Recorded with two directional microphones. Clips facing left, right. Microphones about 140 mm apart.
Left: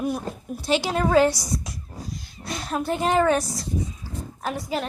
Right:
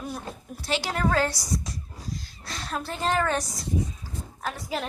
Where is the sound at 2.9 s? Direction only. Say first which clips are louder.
Left 6 dB; 15° left (ahead or behind); by 4.8 s centre (ahead or behind).